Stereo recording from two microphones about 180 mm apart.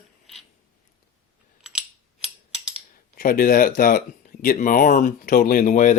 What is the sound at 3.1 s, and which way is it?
Speech, 50° left (ahead or behind).